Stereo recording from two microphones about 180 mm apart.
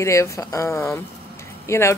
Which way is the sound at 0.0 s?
15° left (ahead or behind).